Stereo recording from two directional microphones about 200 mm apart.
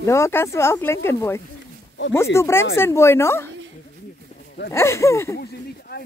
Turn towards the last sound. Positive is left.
turn(degrees=55)  # may be behind; listen again after turning